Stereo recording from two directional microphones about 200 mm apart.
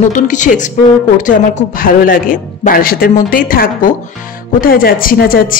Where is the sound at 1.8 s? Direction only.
45° left (ahead or behind).